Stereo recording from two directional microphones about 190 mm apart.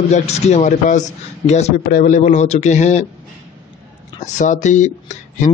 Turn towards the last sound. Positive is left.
turn(degrees=40)  # may be behind; listen again after turning